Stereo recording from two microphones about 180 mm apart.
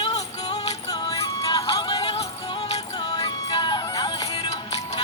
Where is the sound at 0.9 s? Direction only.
20° left (ahead or behind).